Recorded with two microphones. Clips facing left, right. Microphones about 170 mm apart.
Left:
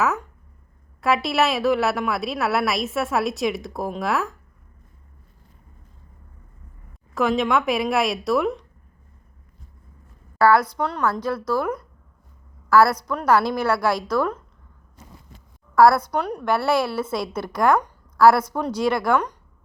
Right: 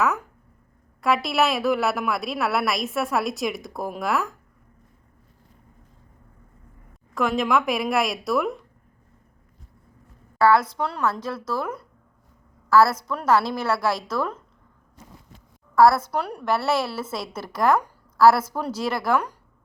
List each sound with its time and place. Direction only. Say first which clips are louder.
0.0 s a woman's voice: left 1 dB; centre (ahead or behind)
7.1 s a woman's voice: left 2 dB; centre (ahead or behind)
10.4 s a woman's voice: left 1 dB; 25° right (ahead or behind)
12.6 s a woman's voice: left 1 dB; 25° right (ahead or behind)
16.0 s a woman's voice: left 2 dB; 5° right (ahead or behind)